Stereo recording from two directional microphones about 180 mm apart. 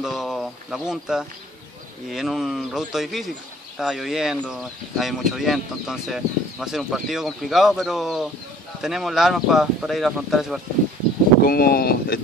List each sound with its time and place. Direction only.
0.0 s speech: 5° right (ahead or behind)
11.4 s speech: 60° left (ahead or behind)